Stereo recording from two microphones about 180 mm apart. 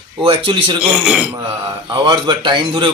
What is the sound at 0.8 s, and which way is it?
Speech, 5° right (ahead or behind).